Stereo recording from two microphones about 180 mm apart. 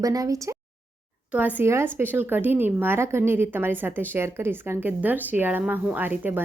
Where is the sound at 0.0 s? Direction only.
20° right (ahead or behind).